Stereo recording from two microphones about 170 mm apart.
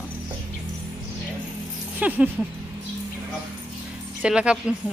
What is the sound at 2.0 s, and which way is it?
Speech, 10° right (ahead or behind).